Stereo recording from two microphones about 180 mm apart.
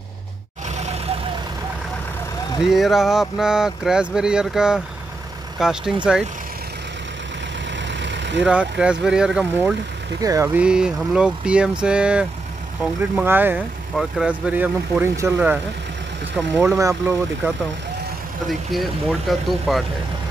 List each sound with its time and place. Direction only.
0.7 s vehicle: 40° right (ahead or behind)
2.6 s speech: centre (ahead or behind)
7.9 s vehicle: 80° right
8.5 s speech: 5° right (ahead or behind)
10.2 s speech: 15° right (ahead or behind)
18.5 s speech: centre (ahead or behind)